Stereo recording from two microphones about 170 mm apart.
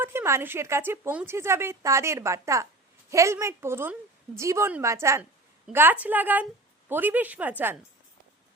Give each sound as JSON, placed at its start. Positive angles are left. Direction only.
{"t": 0.0, "sound": "a woman's voice", "side_deg": -15}